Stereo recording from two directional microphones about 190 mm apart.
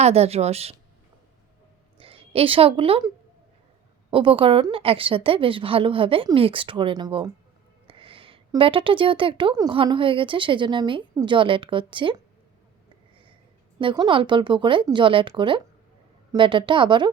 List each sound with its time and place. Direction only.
0.0 s a woman's voice: 35° right (ahead or behind)
2.0 s a woman's voice: 30° right (ahead or behind)
4.1 s a woman's voice: 30° right (ahead or behind)
13.7 s a woman's voice: 20° right (ahead or behind)